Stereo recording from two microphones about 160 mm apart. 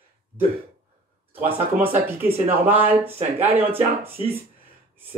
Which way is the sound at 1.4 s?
35° right (ahead or behind).